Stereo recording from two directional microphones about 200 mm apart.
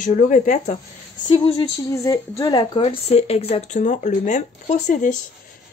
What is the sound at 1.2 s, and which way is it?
Speech, 25° left (ahead or behind).